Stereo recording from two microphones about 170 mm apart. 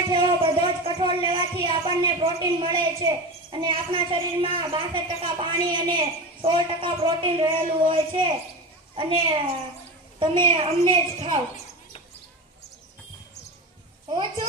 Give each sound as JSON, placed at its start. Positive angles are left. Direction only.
{"t": 0.1, "sound": "music", "side_deg": -30}
{"t": 1.3, "sound": "a woman's voice", "side_deg": -30}
{"t": 10.2, "sound": "a woman's voice", "side_deg": -30}
{"t": 14.1, "sound": "a woman's voice", "side_deg": -25}